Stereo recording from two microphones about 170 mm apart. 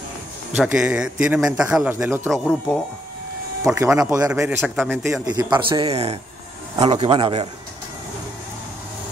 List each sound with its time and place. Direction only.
0.6 s a man's voice: 5° right (ahead or behind)
2.3 s a man's voice: centre (ahead or behind)
3.7 s speech: 15° right (ahead or behind)
4.3 s a man's voice: 10° right (ahead or behind); by 7.4 s 30° right (ahead or behind)